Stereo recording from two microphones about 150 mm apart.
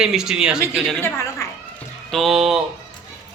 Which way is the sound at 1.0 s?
20° left (ahead or behind).